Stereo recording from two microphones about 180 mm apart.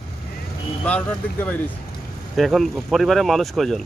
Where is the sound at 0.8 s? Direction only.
5° left (ahead or behind).